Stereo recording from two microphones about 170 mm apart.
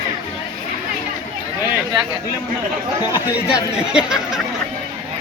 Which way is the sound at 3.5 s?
5° right (ahead or behind).